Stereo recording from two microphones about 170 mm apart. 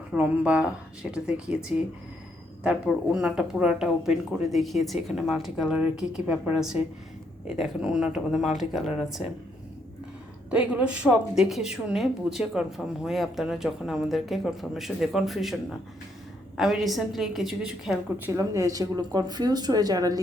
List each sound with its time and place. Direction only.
0.1 s speech: 5° right (ahead or behind)
2.6 s speech: 5° right (ahead or behind)
10.5 s speech: 5° right (ahead or behind)
16.6 s speech: centre (ahead or behind)
18.3 s speech: 20° right (ahead or behind)